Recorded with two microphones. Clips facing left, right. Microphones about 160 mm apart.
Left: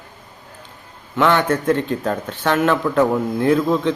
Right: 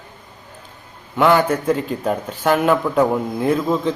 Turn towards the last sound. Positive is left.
turn(degrees=-5)  # may be behind; listen again after turning